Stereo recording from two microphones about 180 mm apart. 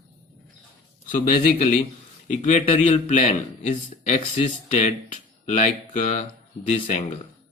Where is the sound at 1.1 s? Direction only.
50° left (ahead or behind).